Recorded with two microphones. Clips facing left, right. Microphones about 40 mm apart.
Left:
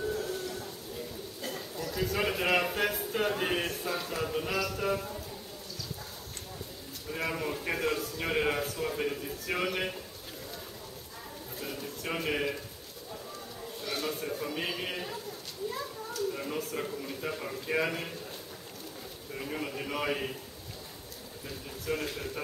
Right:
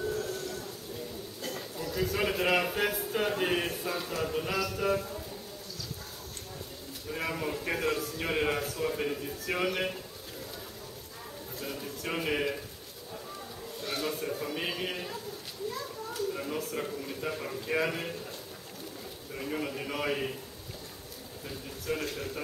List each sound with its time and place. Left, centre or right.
0.1 s a sound: centre
1.9 s a man's voice: centre
7.1 s a man's voice: centre
11.6 s a sound: centre
13.8 s a man's voice: centre
16.3 s a man's voice: centre
19.3 s a man's voice: centre
21.5 s a man's voice: centre